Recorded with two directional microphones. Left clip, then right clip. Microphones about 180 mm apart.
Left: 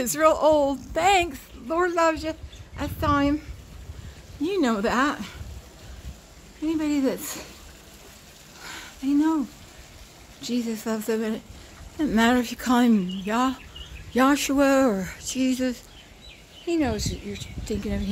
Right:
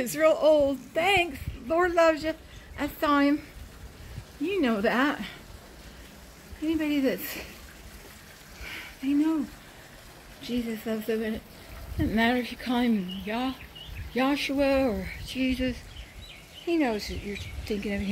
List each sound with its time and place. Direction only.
0.0 s speech: 20° left (ahead or behind)
4.5 s speech: 20° left (ahead or behind)
6.6 s speech: 15° left (ahead or behind)
8.6 s a sound: 20° left (ahead or behind)
10.4 s speech: 30° left (ahead or behind)
16.6 s speech: 10° left (ahead or behind)